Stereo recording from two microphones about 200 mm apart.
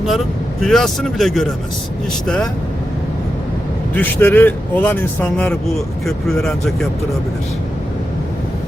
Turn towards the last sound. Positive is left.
turn(degrees=0)  # may be behind; listen again after turning